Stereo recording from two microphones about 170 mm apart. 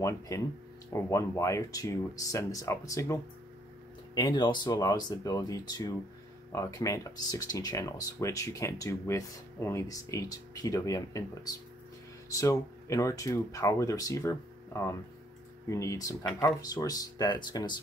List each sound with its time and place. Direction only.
0.3 s speech: 20° left (ahead or behind)